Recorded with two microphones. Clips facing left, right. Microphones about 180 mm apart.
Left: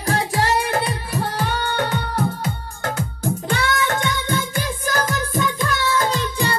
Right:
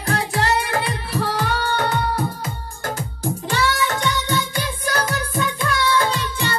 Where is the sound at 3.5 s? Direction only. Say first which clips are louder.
Right 1 dB; 55° left (ahead or behind).